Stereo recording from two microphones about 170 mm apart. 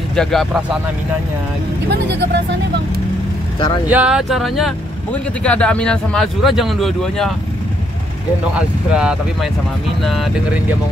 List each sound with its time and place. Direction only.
0.1 s speech: centre (ahead or behind)
1.9 s speech: 80° right
3.9 s speech: 5° right (ahead or behind)
8.5 s speech: 5° right (ahead or behind)